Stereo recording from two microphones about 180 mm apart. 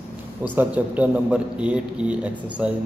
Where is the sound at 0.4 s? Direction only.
10° right (ahead or behind).